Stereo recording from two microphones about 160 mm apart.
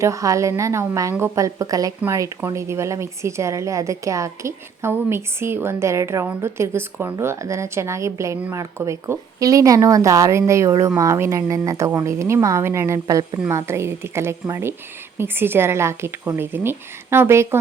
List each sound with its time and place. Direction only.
0.0 s a woman's voice: 20° right (ahead or behind)